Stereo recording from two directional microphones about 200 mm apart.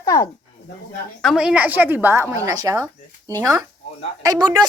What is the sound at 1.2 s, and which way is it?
Speech, 5° right (ahead or behind).